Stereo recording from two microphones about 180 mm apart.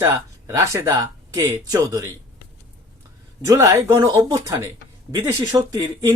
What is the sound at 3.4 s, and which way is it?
Speech, 15° right (ahead or behind).